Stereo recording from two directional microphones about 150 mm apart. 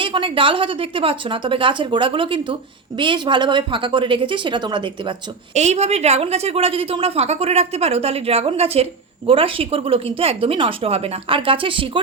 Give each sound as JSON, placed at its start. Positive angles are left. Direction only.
{"t": 0.0, "sound": "a woman's voice", "side_deg": -35}
{"t": 5.5, "sound": "a woman's voice", "side_deg": -50}